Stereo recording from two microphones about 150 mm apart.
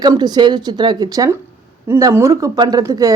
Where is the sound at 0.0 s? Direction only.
30° right (ahead or behind).